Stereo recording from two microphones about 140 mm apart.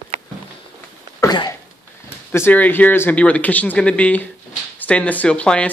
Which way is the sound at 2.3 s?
15° left (ahead or behind).